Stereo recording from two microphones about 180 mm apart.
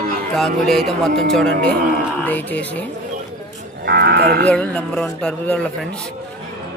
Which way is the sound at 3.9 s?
60° right (ahead or behind).